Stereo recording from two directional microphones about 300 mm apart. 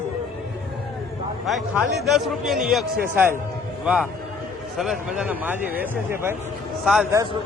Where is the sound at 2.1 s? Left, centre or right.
Centre.